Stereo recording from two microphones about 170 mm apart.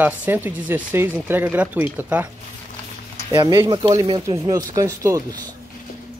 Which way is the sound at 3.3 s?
20° right (ahead or behind).